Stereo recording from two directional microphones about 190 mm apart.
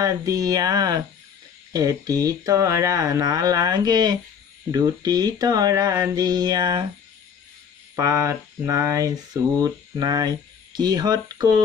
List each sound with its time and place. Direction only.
0.0 s speech: 20° right (ahead or behind)
7.9 s speech: 15° right (ahead or behind)